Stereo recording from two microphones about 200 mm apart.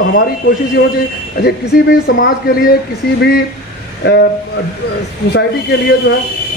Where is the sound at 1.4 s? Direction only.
55° left (ahead or behind).